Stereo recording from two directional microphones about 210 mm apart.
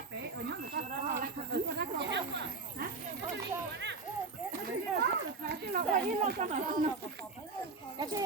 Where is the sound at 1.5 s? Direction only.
55° right (ahead or behind).